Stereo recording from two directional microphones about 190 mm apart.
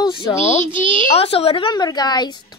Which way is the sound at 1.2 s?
30° left (ahead or behind).